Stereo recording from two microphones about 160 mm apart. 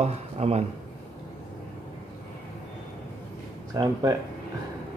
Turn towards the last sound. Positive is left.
turn(degrees=-20)  # may be behind; listen again after turning